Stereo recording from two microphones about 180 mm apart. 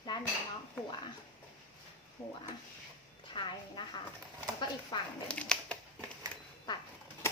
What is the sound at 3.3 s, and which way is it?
Speech, 25° left (ahead or behind).